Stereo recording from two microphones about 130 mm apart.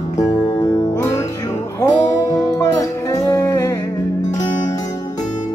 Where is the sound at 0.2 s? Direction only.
25° left (ahead or behind).